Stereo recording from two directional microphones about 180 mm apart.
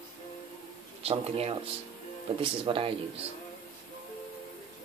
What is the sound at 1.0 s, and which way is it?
Speech, 35° right (ahead or behind).